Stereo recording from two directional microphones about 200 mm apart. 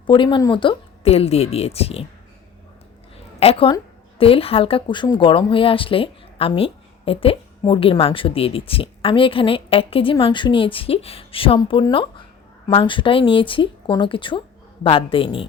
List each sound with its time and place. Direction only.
0.0 s speech: 25° left (ahead or behind)
3.4 s speech: 30° left (ahead or behind)